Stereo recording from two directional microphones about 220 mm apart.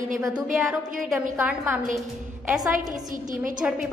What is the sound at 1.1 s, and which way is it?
Speech, 5° right (ahead or behind).